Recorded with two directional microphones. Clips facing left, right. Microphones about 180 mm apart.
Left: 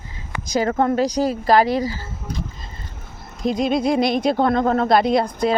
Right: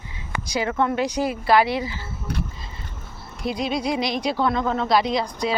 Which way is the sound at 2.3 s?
70° right (ahead or behind).